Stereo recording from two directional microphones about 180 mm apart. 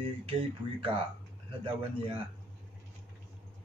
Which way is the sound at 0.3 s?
30° right (ahead or behind).